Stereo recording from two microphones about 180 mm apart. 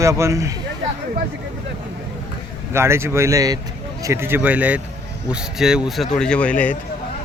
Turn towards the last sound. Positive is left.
turn(degrees=10)  # may be behind; listen again after turning